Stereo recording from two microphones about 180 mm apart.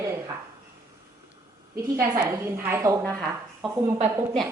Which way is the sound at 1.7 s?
15° right (ahead or behind).